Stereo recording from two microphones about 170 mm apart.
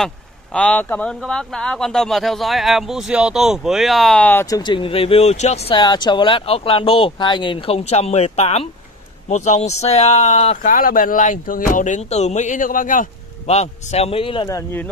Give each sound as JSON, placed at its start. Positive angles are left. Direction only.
{"t": 0.0, "sound": "speech", "side_deg": 5}
{"t": 14.5, "sound": "speech", "side_deg": 15}